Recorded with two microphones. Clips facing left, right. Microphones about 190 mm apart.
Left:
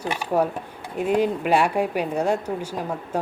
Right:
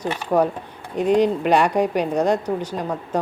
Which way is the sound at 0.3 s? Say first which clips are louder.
Right 3 dB; 45° right (ahead or behind).